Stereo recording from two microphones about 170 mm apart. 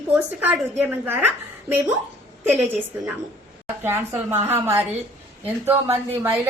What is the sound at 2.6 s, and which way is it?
A woman's voice, 10° right (ahead or behind).